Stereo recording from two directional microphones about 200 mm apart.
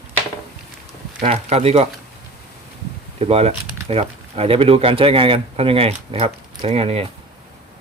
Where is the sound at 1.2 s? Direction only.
30° right (ahead or behind).